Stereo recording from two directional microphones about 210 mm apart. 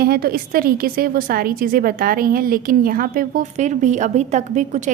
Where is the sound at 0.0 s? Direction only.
45° right (ahead or behind).